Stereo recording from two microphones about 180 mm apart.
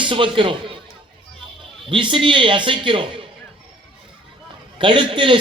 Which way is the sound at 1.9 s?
25° right (ahead or behind).